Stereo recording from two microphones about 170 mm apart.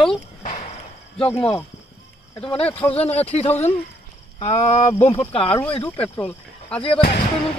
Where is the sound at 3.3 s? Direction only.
35° left (ahead or behind).